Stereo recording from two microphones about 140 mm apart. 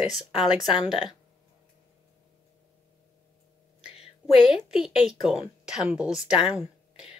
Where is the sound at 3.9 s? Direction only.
45° left (ahead or behind).